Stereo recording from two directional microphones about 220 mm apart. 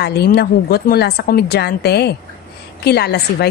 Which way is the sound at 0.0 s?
45° left (ahead or behind).